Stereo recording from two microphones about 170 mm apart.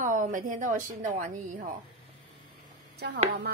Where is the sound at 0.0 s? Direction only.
50° right (ahead or behind).